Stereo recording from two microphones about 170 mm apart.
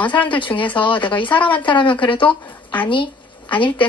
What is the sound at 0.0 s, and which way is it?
Speech, 10° left (ahead or behind).